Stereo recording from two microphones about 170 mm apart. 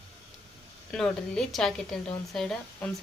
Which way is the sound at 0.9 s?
Centre (ahead or behind).